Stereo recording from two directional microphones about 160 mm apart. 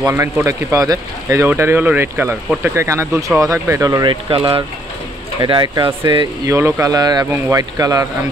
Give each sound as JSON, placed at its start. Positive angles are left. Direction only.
{"t": 0.0, "sound": "speech", "side_deg": -15}
{"t": 5.4, "sound": "speech", "side_deg": -30}